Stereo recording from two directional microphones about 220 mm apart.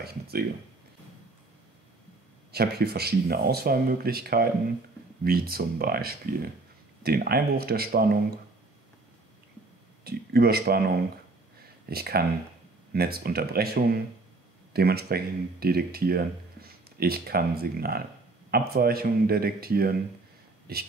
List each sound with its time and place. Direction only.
0.0 s speech: 45° right (ahead or behind)
2.5 s speech: 45° right (ahead or behind)
10.0 s speech: 45° right (ahead or behind)
11.8 s speech: 45° right (ahead or behind)